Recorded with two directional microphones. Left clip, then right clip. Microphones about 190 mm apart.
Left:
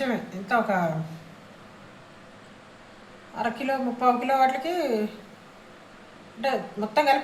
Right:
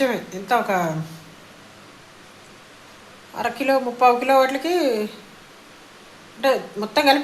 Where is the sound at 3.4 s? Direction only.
35° right (ahead or behind).